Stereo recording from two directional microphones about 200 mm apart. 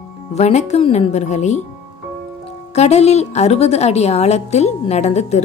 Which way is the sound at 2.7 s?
30° left (ahead or behind).